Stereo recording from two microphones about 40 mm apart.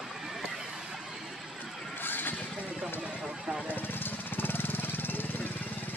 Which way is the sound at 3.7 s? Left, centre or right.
Left.